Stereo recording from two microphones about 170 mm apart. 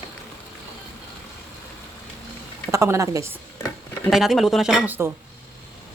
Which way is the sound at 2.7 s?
15° right (ahead or behind).